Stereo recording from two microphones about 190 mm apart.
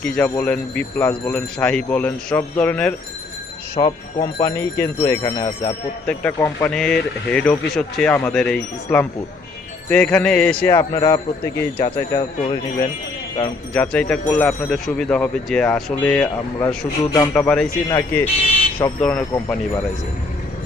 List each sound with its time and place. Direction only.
0.0 s speech: 5° left (ahead or behind)
3.8 s a man's voice: 25° left (ahead or behind)
4.4 s a man's voice: 15° left (ahead or behind)
6.0 s a man's voice: 10° left (ahead or behind)
13.7 s speech: 5° left (ahead or behind)
17.8 s a man's voice: 20° left (ahead or behind)
18.9 s speech: 5° left (ahead or behind)